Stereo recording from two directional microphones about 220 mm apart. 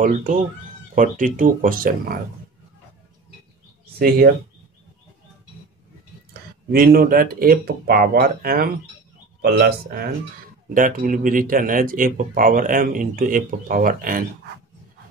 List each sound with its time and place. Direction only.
0.0 s speech: 35° right (ahead or behind)
6.7 s speech: 45° right (ahead or behind)